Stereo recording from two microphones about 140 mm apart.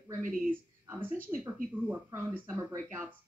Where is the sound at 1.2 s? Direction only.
15° right (ahead or behind).